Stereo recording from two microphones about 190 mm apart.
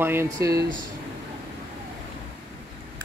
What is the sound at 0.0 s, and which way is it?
Speech, 10° right (ahead or behind).